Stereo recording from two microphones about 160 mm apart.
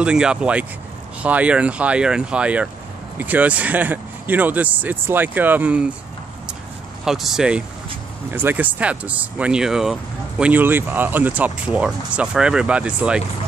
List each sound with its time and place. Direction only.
0.0 s speech: 5° right (ahead or behind)
7.1 s speech: centre (ahead or behind)